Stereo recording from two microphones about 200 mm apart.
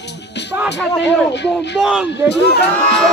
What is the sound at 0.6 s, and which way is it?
Speech, 60° left (ahead or behind).